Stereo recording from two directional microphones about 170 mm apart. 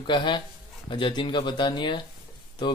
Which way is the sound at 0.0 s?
30° left (ahead or behind).